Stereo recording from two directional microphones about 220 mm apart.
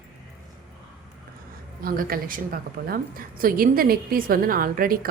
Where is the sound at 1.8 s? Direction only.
40° right (ahead or behind).